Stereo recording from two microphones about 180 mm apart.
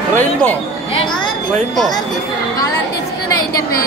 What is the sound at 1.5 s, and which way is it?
Speech, centre (ahead or behind).